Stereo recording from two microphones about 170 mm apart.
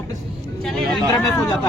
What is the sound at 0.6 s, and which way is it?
Speech, centre (ahead or behind).